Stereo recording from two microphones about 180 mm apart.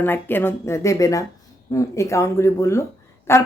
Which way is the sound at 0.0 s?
10° left (ahead or behind).